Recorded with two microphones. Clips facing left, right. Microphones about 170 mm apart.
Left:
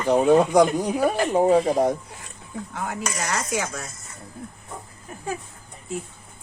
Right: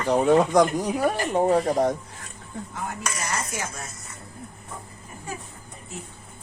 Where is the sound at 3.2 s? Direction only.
90° left.